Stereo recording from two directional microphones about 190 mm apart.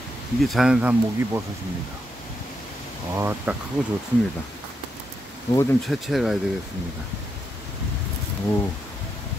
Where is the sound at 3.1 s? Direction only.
10° right (ahead or behind).